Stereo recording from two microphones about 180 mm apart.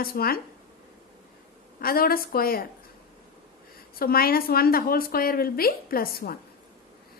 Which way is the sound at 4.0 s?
55° left (ahead or behind).